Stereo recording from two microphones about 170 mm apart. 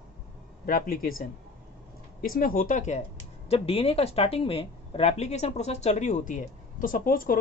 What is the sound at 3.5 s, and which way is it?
Speech, 35° left (ahead or behind).